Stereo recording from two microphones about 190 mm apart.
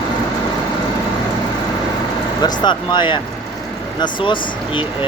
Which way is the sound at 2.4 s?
25° left (ahead or behind).